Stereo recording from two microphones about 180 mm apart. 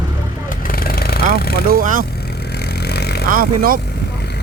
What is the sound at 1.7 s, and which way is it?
Speech, 50° right (ahead or behind).